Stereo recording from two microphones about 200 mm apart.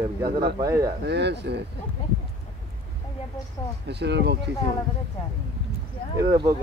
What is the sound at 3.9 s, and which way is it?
Speech, 60° right (ahead or behind).